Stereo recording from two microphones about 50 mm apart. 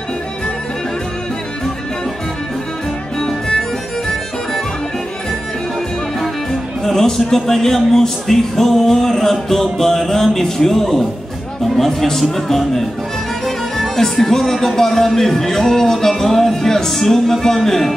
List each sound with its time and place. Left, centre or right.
3.2 s music: centre
6.1 s speech: centre